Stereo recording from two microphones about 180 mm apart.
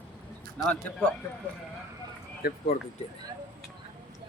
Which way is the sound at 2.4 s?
55° left (ahead or behind).